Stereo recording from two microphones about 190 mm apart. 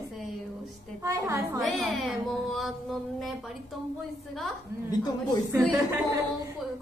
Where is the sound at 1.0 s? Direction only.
15° right (ahead or behind).